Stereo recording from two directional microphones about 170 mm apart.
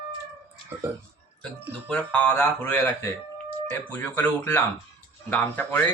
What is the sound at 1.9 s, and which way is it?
Speech, 10° left (ahead or behind).